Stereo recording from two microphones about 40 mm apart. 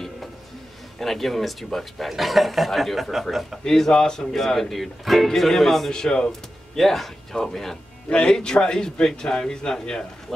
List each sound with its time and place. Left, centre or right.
0.9 s speech: centre
3.6 s speech: centre
5.9 s speech: centre
6.8 s speech: centre
8.1 s a man's voice: centre